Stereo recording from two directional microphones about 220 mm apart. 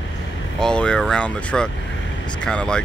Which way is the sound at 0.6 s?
5° left (ahead or behind).